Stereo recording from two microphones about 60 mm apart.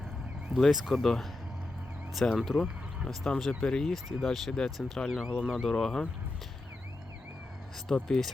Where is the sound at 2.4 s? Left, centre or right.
Centre.